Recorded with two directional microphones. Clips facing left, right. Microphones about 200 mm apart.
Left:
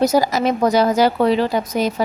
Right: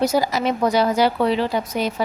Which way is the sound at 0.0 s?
45° left (ahead or behind).